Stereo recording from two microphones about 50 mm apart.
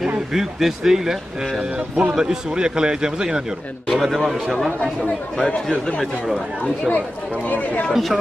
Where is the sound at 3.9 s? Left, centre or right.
Centre.